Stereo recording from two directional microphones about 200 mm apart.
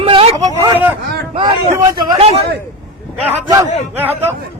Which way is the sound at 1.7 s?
20° right (ahead or behind).